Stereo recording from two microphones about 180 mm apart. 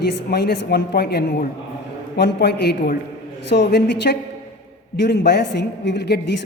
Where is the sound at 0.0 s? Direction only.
65° left (ahead or behind).